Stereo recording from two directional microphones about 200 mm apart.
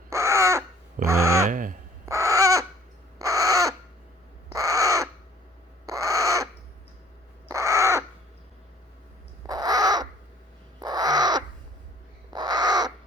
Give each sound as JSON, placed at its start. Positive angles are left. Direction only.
{"t": 0.1, "sound": "crow", "side_deg": -15}
{"t": 1.0, "sound": "a sound", "side_deg": -15}
{"t": 1.5, "sound": "a sound", "side_deg": -40}
{"t": 2.0, "sound": "owl", "side_deg": -15}
{"t": 3.2, "sound": "crow", "side_deg": -15}
{"t": 9.5, "sound": "crow", "side_deg": -20}